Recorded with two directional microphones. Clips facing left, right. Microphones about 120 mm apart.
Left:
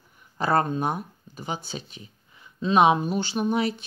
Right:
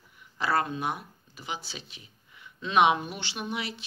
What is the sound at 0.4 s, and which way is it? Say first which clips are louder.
Speech: left 5 dB; 45° left (ahead or behind).